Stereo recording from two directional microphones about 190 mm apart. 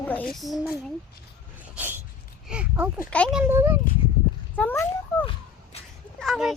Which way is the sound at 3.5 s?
10° right (ahead or behind).